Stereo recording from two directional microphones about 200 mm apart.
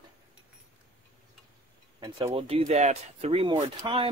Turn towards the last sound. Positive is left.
turn(degrees=-30)  # may be behind; listen again after turning